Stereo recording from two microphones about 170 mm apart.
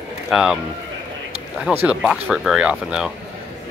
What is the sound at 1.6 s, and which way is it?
Speech, 5° right (ahead or behind).